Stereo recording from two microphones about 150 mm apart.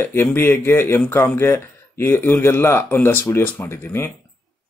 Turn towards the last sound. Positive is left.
turn(degrees=15)  # may be behind; listen again after turning